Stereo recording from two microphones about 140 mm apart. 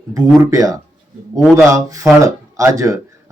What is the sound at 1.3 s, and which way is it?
Speech, centre (ahead or behind).